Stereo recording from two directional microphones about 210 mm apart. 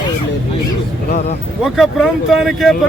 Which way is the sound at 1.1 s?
40° left (ahead or behind).